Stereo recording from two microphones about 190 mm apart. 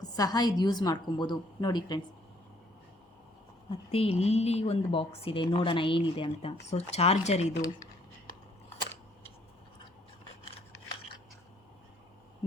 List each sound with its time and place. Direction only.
0.0 s a woman's voice: 20° left (ahead or behind)
3.7 s a woman's voice: 30° left (ahead or behind)
12.4 s a sound: 30° left (ahead or behind)